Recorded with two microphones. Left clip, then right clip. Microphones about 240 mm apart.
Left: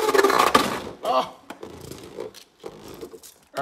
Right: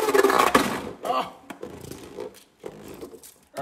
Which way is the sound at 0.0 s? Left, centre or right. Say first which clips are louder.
Left 1 dB; centre.